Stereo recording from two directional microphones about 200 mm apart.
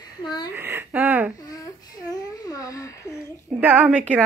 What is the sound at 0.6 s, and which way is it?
Speech, 10° right (ahead or behind).